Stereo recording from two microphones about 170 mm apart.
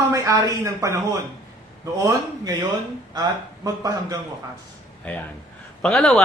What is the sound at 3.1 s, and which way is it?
A woman's voice, 20° right (ahead or behind).